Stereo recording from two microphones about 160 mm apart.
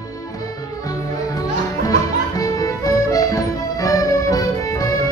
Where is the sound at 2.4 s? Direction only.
20° left (ahead or behind).